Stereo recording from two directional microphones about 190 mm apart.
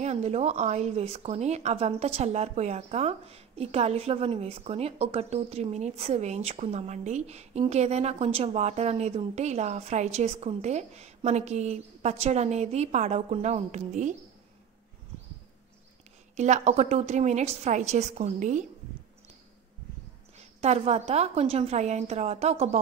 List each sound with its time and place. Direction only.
0.0 s speech: 35° right (ahead or behind)
16.3 s speech: 35° right (ahead or behind)
20.3 s speech: 35° right (ahead or behind)